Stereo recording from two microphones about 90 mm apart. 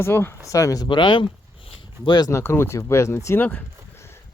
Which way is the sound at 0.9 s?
65° left (ahead or behind).